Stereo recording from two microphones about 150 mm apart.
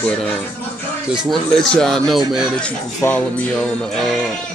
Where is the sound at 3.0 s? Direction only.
5° left (ahead or behind).